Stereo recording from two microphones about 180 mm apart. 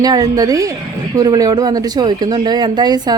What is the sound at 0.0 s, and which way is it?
Speech, 20° right (ahead or behind).